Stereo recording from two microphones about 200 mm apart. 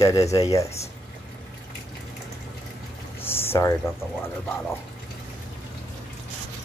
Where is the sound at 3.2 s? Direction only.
10° left (ahead or behind).